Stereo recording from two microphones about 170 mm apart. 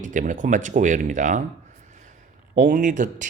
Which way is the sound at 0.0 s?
50° right (ahead or behind).